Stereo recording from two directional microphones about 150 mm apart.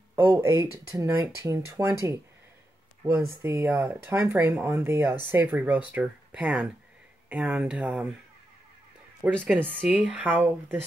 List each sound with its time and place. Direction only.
0.1 s a sound: 15° right (ahead or behind)
0.9 s speech: 15° right (ahead or behind)
9.2 s speech: 10° right (ahead or behind)